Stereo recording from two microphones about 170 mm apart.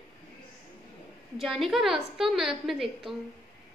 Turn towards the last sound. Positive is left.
turn(degrees=0)  # may be behind; listen again after turning